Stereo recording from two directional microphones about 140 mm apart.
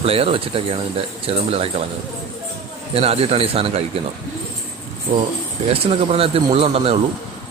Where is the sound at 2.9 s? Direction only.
45° right (ahead or behind).